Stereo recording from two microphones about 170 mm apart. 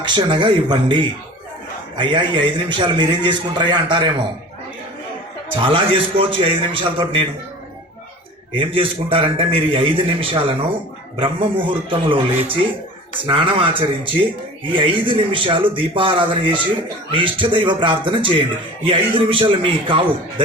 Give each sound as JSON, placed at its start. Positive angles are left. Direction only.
{"t": 0.0, "sound": "a man's voice", "side_deg": -30}
{"t": 2.0, "sound": "a man's voice", "side_deg": -30}
{"t": 5.5, "sound": "a man's voice", "side_deg": -30}
{"t": 8.5, "sound": "a man's voice", "side_deg": -30}